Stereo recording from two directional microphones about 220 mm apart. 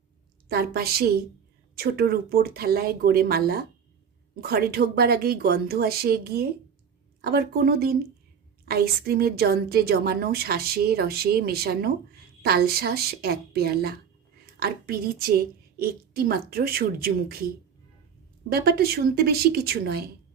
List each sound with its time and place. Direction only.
0.4 s a woman's voice: 45° right (ahead or behind)
18.4 s a woman's voice: 45° right (ahead or behind)